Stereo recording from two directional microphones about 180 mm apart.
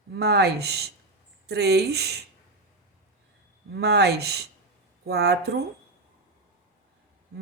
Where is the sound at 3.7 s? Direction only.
65° right (ahead or behind).